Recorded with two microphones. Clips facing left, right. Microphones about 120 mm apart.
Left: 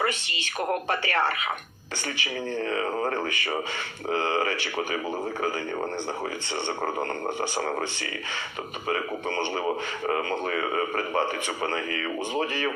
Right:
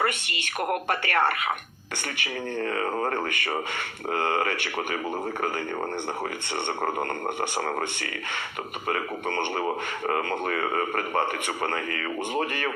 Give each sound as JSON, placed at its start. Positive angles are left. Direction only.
{"t": 0.9, "sound": "speech", "side_deg": -55}
{"t": 2.6, "sound": "a man's voice", "side_deg": -45}
{"t": 8.9, "sound": "a man's voice", "side_deg": -50}